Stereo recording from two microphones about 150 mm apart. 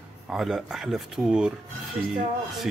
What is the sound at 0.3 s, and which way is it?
Speech, centre (ahead or behind).